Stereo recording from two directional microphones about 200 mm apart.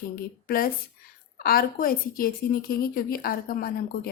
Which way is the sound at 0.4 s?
45° left (ahead or behind).